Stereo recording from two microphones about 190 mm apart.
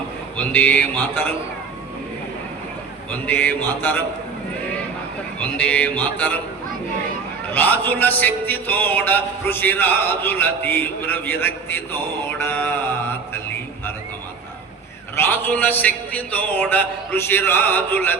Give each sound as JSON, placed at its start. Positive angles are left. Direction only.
{"t": 0.3, "sound": "music", "side_deg": 10}
{"t": 3.1, "sound": "music", "side_deg": 10}
{"t": 5.4, "sound": "music", "side_deg": 10}
{"t": 7.5, "sound": "music", "side_deg": 10}
{"t": 15.1, "sound": "music", "side_deg": 10}